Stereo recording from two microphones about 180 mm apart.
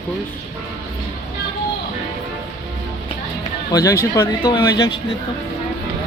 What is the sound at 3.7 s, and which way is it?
Speech, 20° left (ahead or behind).